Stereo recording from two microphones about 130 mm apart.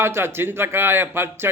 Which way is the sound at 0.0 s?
20° right (ahead or behind).